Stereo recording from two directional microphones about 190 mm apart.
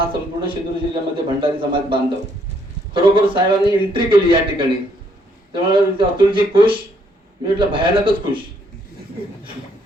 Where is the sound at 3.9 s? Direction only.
25° right (ahead or behind).